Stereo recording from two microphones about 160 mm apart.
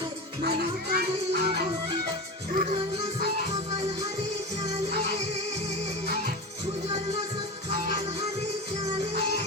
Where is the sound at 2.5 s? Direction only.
55° right (ahead or behind).